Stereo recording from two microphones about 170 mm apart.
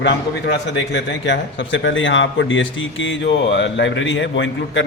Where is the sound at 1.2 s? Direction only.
90° left.